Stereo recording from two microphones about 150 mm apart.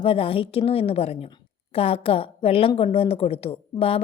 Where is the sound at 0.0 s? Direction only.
40° left (ahead or behind).